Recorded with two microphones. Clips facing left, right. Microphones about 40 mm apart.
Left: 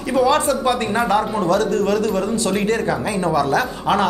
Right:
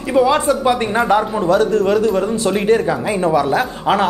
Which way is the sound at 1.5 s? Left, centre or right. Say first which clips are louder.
Right 4 dB; right.